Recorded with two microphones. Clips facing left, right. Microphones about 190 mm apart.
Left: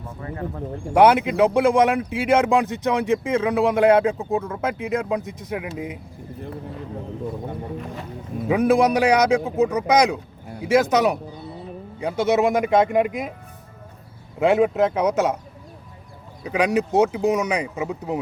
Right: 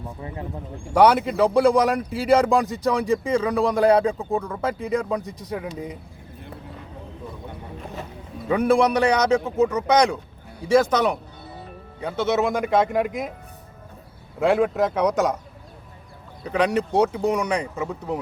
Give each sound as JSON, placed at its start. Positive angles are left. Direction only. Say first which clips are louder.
{"t": 0.2, "sound": "speech", "louder": "left 5 dB", "side_deg": -15}
{"t": 0.9, "sound": "speech", "louder": "left 1 dB", "side_deg": 0}
{"t": 8.4, "sound": "speech", "louder": "left 1 dB", "side_deg": 10}
{"t": 14.3, "sound": "speech", "louder": "left 2 dB", "side_deg": 5}
{"t": 16.4, "sound": "speech", "louder": "left 1 dB", "side_deg": 10}